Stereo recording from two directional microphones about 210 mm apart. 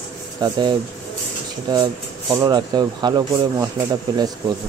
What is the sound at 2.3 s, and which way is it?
Speech, 20° right (ahead or behind).